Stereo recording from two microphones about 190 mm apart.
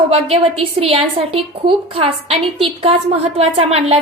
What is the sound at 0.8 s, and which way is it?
A woman's voice, 30° right (ahead or behind).